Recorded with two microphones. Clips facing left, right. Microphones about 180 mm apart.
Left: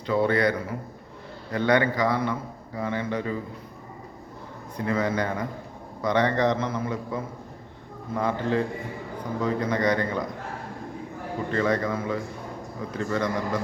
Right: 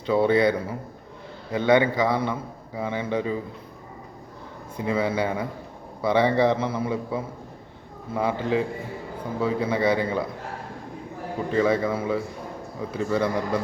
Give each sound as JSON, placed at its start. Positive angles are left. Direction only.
{"t": 0.0, "sound": "a man's voice", "side_deg": -20}
{"t": 1.5, "sound": "a man's voice", "side_deg": -20}
{"t": 4.8, "sound": "a man's voice", "side_deg": -10}
{"t": 11.5, "sound": "a man's voice", "side_deg": -10}